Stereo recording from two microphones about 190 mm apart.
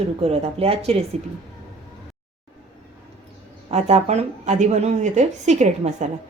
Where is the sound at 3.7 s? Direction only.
35° right (ahead or behind).